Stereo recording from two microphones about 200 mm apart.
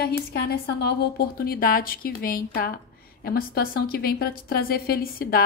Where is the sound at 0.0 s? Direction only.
50° left (ahead or behind).